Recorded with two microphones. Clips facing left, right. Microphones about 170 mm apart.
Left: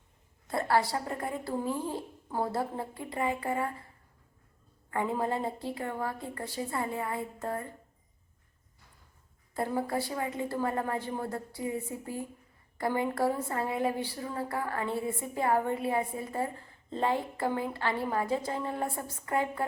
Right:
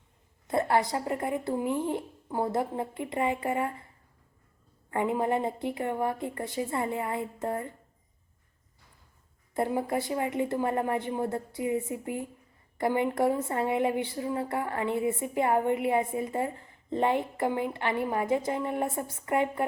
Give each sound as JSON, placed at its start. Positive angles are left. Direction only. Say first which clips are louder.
{"t": 0.4, "sound": "speech", "louder": "right 2 dB", "side_deg": -20}
{"t": 4.9, "sound": "speech", "louder": "right 3 dB", "side_deg": -20}
{"t": 9.6, "sound": "speech", "louder": "right 3 dB", "side_deg": -20}